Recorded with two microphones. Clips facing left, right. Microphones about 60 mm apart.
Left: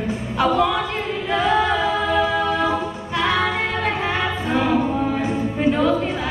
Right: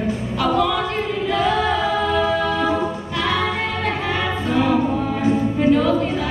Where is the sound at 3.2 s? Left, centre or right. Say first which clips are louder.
Left 1 dB; left.